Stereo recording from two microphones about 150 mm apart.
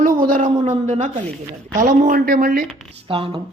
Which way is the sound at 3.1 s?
35° right (ahead or behind).